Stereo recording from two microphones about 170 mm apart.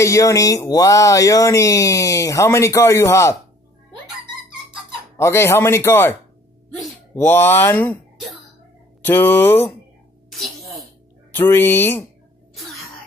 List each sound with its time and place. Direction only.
0.0 s speech: 20° left (ahead or behind)
5.1 s a man's voice: 15° left (ahead or behind)
7.2 s a man's voice: 15° left (ahead or behind)
9.0 s a man's voice: 10° left (ahead or behind)
10.3 s sneeze: centre (ahead or behind)
11.3 s a man's voice: 10° left (ahead or behind)